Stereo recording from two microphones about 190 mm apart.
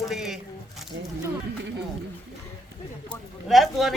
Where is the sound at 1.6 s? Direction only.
65° right (ahead or behind).